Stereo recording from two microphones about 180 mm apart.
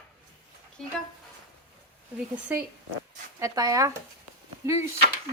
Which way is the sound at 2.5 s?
10° right (ahead or behind).